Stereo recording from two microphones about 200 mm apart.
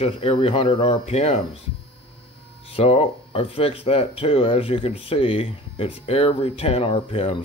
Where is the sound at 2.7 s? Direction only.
30° left (ahead or behind).